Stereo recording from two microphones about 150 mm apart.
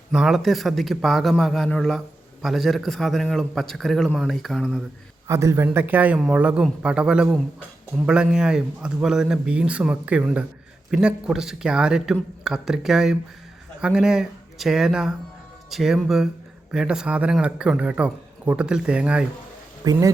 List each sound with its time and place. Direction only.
0.1 s a man's voice: 5° right (ahead or behind)
5.3 s a man's voice: 20° right (ahead or behind)
19.8 s speech: 25° right (ahead or behind)